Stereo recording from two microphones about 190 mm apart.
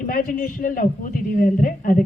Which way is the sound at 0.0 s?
50° left (ahead or behind).